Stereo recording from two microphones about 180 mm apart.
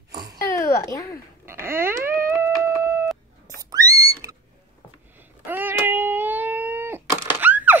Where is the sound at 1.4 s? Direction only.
15° right (ahead or behind).